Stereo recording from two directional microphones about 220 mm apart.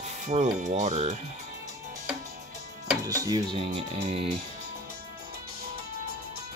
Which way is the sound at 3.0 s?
15° right (ahead or behind).